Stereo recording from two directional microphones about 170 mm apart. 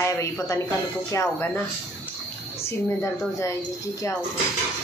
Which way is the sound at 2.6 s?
15° left (ahead or behind).